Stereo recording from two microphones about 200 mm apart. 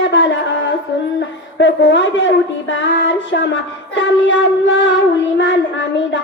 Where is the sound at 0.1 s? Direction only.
65° left (ahead or behind).